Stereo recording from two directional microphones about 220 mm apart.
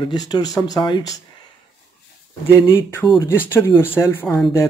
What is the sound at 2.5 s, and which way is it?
Speech, 15° left (ahead or behind).